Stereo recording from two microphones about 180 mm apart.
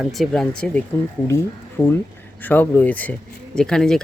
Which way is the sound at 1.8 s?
10° left (ahead or behind).